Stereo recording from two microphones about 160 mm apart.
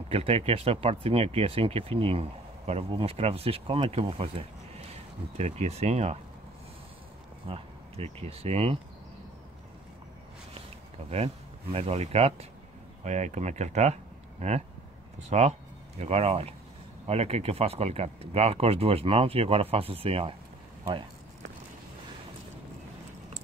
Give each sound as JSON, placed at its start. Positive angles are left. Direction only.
{"t": 0.1, "sound": "speech", "side_deg": -40}
{"t": 7.4, "sound": "speech", "side_deg": -40}
{"t": 11.1, "sound": "speech", "side_deg": -40}